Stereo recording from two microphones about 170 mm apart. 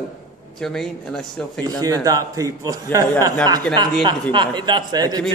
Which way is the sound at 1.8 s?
20° right (ahead or behind).